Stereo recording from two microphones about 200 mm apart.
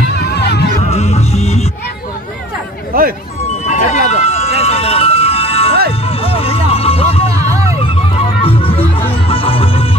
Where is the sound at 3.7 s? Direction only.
30° left (ahead or behind).